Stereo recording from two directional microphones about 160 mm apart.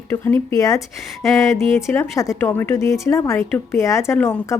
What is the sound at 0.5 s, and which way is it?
Speech, 20° left (ahead or behind).